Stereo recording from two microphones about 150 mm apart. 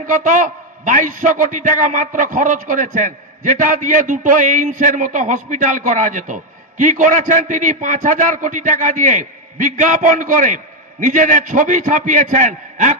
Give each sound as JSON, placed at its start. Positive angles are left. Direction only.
{"t": 0.0, "sound": "a man's voice", "side_deg": -60}